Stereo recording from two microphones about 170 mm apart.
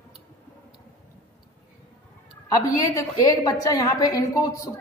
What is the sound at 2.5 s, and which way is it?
A woman's voice, 20° left (ahead or behind).